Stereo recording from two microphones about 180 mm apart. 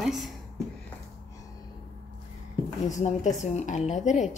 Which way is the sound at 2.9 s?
40° left (ahead or behind).